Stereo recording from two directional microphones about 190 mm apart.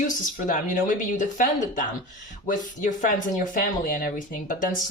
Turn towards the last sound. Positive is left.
turn(degrees=45)  # may be behind; listen again after turning